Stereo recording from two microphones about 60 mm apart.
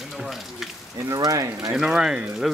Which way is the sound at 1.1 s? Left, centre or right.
Right.